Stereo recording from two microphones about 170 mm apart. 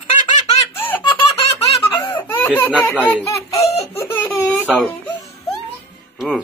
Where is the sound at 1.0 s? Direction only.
30° left (ahead or behind).